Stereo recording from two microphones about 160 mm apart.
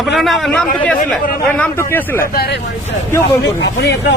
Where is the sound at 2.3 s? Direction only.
80° left.